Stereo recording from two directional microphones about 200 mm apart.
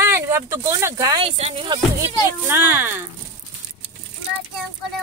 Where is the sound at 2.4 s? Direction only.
10° right (ahead or behind).